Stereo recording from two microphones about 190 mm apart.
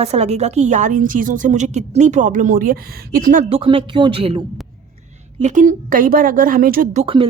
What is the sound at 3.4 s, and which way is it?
Speech, 30° right (ahead or behind).